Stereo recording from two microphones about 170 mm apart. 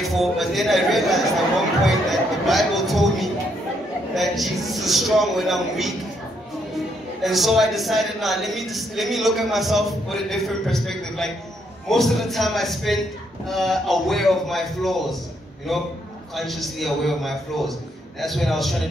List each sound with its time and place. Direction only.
0.0 s a woman's voice: centre (ahead or behind)
7.2 s a woman's voice: centre (ahead or behind)